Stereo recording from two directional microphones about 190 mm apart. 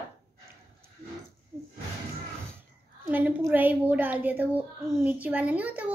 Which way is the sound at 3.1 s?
10° right (ahead or behind).